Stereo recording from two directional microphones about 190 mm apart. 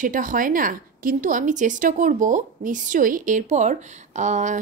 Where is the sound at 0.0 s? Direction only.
45° right (ahead or behind).